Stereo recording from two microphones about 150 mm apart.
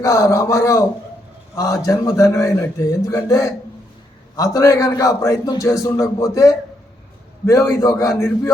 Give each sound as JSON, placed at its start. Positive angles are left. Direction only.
{"t": 0.0, "sound": "speech", "side_deg": 20}
{"t": 4.5, "sound": "speech", "side_deg": 20}